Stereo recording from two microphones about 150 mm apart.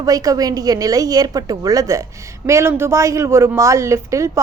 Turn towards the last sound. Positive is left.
turn(degrees=-20)  # may be behind; listen again after turning